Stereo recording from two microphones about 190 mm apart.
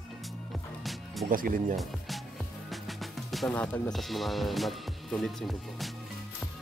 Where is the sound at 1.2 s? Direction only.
45° right (ahead or behind).